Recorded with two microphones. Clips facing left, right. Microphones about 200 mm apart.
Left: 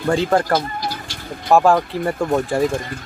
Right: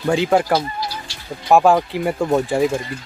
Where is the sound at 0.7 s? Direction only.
50° left (ahead or behind).